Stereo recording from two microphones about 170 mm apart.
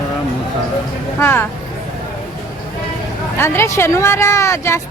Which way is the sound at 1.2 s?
10° left (ahead or behind).